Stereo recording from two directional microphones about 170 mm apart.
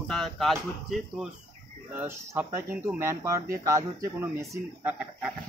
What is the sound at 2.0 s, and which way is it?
Speech, 15° right (ahead or behind).